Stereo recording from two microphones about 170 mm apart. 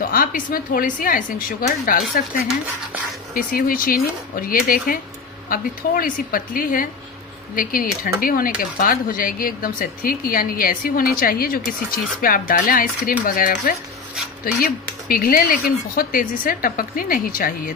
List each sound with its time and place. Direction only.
0.0 s a woman's voice: 60° left (ahead or behind)
3.3 s speech: 55° left (ahead or behind)